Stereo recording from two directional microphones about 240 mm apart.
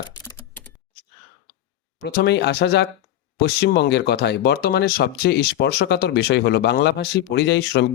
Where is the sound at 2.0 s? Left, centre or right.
Left.